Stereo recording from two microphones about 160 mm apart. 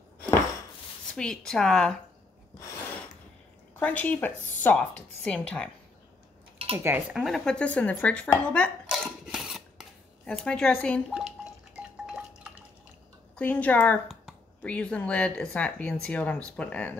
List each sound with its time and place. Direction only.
1.1 s speech: 5° left (ahead or behind)
3.8 s speech: 10° left (ahead or behind)
6.8 s speech: 15° right (ahead or behind)
7.2 s speech: centre (ahead or behind)
8.8 s cutlery: 5° right (ahead or behind)
13.4 s speech: 10° left (ahead or behind)